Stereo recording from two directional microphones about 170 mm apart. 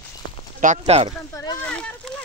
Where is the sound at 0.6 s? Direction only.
40° right (ahead or behind).